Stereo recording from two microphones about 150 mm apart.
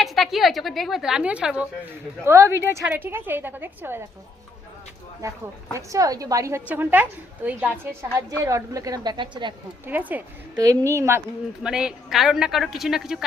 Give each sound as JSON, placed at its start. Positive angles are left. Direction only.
{"t": 0.0, "sound": "a woman's voice", "side_deg": 0}
{"t": 2.2, "sound": "a woman's voice", "side_deg": -20}
{"t": 5.2, "sound": "a woman's voice", "side_deg": -20}
{"t": 8.4, "sound": "a woman's voice", "side_deg": -20}
{"t": 9.8, "sound": "a woman's voice", "side_deg": -10}
{"t": 11.6, "sound": "a woman's voice", "side_deg": -5}